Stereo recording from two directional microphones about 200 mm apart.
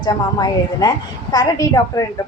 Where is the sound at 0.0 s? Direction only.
20° left (ahead or behind).